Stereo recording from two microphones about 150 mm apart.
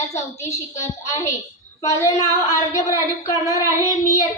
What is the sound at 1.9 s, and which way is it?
A woman's voice, 20° left (ahead or behind).